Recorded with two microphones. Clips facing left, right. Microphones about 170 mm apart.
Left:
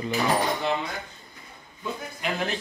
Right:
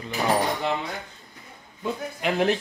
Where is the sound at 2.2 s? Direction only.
65° right (ahead or behind).